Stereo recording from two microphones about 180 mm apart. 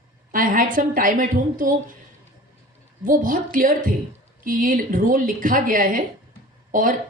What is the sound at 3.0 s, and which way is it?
Speech, 50° right (ahead or behind).